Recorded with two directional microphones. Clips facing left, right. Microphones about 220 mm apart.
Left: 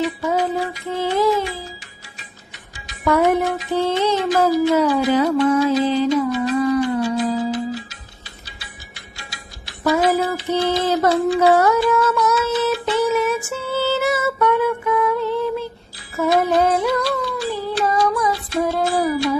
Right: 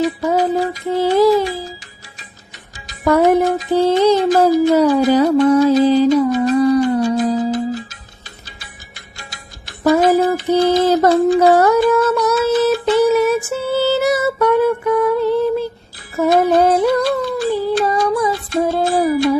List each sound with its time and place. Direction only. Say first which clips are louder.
0.0 s music: right 4 dB; 40° right (ahead or behind)
2.8 s music: right 4 dB; 40° right (ahead or behind)
9.1 s music: right 3 dB; 45° right (ahead or behind)
16.1 s a sound: right 4 dB; 45° right (ahead or behind)
18.1 s music: right 4 dB; 30° right (ahead or behind)